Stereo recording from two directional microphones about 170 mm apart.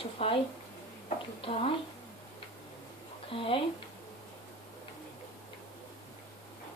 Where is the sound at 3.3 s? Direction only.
30° left (ahead or behind).